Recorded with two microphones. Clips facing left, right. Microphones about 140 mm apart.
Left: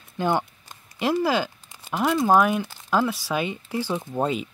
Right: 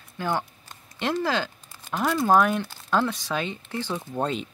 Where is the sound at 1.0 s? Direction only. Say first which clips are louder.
Left 3 dB; 10° left (ahead or behind).